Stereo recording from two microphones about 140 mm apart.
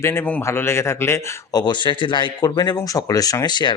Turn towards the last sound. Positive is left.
turn(degrees=30)  # may be behind; listen again after turning